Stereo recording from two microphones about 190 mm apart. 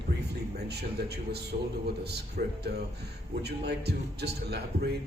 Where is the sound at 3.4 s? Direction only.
60° right (ahead or behind).